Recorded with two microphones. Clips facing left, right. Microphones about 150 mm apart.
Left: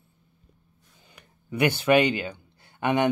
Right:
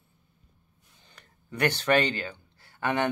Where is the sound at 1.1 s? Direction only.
10° left (ahead or behind).